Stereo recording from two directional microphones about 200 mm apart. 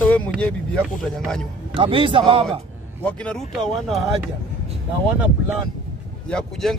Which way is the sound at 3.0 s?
5° left (ahead or behind).